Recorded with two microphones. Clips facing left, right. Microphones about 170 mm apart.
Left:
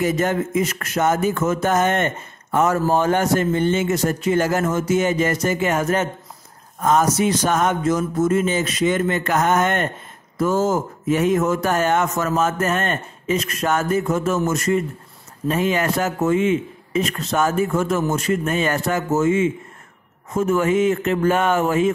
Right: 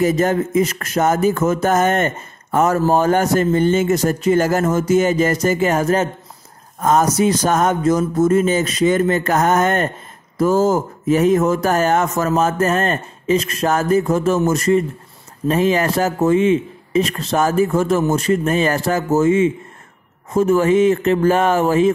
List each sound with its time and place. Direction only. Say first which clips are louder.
0.0 s speech: right 4 dB; 40° right (ahead or behind)